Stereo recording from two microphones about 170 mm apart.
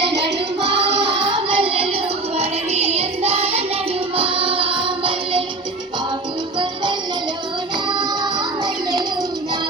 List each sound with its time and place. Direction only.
0.0 s music: 90° right
0.9 s music: 30° right (ahead or behind)
8.2 s music: 25° right (ahead or behind)